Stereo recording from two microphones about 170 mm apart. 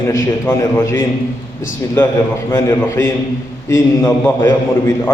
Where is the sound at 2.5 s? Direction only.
15° left (ahead or behind).